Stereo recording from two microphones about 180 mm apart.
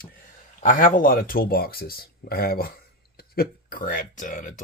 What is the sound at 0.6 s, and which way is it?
Speech, 45° left (ahead or behind).